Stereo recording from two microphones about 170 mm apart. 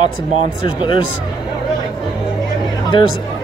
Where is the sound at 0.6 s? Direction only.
30° left (ahead or behind).